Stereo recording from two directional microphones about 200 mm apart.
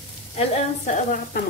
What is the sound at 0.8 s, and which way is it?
Sizzle, 40° left (ahead or behind).